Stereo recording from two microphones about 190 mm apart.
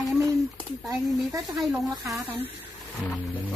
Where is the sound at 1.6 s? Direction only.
Centre (ahead or behind).